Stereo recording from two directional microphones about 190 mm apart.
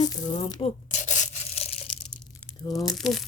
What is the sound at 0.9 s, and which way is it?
Rub, 40° left (ahead or behind).